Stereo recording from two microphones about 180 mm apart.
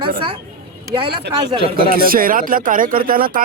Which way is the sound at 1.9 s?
55° right (ahead or behind).